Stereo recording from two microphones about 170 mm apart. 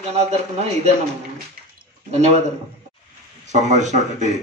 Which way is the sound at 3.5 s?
45° right (ahead or behind).